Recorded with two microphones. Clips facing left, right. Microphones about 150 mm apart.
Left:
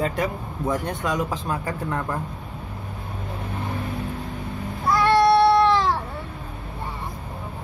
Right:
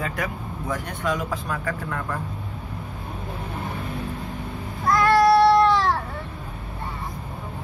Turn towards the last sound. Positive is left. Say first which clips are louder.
# even
turn(degrees=0)  # may be behind; listen again after turning